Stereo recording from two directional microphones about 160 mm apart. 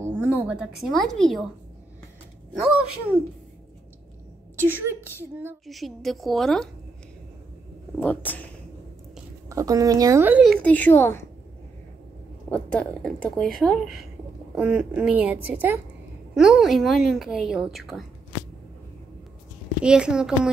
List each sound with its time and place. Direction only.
0.0 s a woman's voice: 10° right (ahead or behind)
4.6 s a woman's voice: 15° right (ahead or behind)
5.7 s a woman's voice: centre (ahead or behind)
8.0 s speech: 10° left (ahead or behind)
9.5 s speech: 20° right (ahead or behind)
10.4 s speech: 5° left (ahead or behind)
12.4 s a woman's voice: 10° left (ahead or behind)
19.8 s a woman's voice: 5° right (ahead or behind)